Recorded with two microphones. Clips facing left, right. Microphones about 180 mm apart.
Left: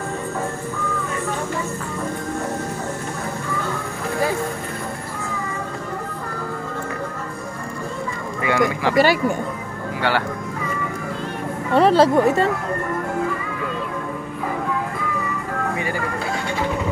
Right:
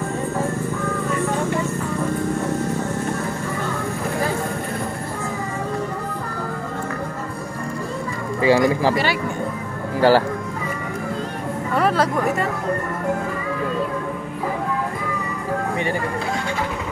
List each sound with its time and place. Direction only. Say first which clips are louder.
8.4 s a sound: right 4 dB; 30° right (ahead or behind)
8.9 s speech: left 5 dB; 45° left (ahead or behind)
9.9 s speech: right 7 dB; 35° right (ahead or behind)
11.7 s speech: left 6 dB; 30° left (ahead or behind)